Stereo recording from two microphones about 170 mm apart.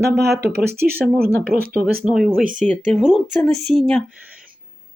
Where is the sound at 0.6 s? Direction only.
15° right (ahead or behind).